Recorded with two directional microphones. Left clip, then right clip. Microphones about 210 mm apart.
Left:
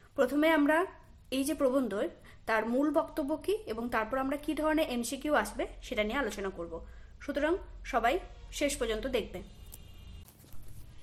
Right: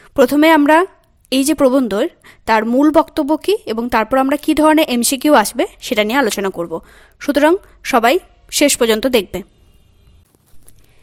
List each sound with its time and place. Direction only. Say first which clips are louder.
0.0 s a woman's voice: right 17 dB; 45° right (ahead or behind)